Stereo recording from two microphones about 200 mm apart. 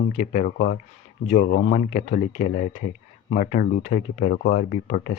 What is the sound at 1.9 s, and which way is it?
Speech, 40° left (ahead or behind).